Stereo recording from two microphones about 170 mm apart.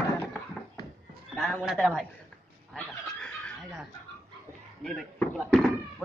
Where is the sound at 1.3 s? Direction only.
5° left (ahead or behind).